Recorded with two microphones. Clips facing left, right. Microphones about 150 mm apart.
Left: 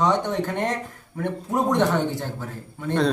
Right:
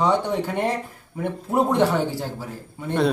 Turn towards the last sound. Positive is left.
turn(degrees=-10)  # may be behind; listen again after turning